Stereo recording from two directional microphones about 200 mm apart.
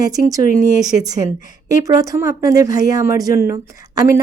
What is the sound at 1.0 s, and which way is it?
A woman's voice, 20° right (ahead or behind).